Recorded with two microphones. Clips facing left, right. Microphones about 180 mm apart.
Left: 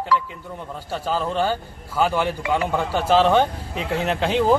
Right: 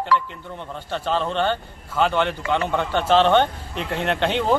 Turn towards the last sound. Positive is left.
turn(degrees=0)  # may be behind; listen again after turning